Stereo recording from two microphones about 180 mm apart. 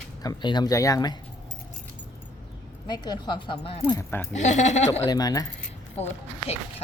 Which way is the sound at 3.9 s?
15° left (ahead or behind).